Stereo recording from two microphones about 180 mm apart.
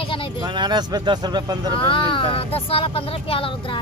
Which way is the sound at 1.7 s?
30° left (ahead or behind).